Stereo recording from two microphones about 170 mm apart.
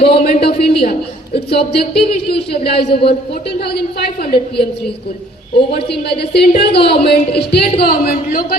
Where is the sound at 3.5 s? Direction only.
70° left (ahead or behind).